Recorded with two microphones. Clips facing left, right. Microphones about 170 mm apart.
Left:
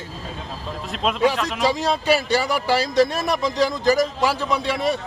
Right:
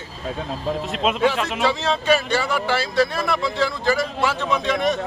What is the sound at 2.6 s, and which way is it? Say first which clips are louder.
A man's voice: left 2 dB; 40° left (ahead or behind).